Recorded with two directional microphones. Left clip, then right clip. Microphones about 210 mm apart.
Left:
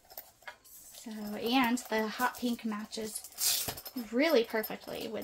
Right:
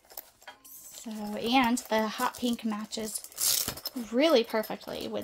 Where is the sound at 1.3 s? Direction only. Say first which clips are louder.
Right 4 dB; 50° right (ahead or behind).